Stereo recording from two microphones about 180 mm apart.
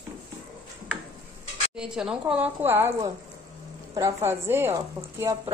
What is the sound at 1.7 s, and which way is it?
A woman's voice, 5° right (ahead or behind).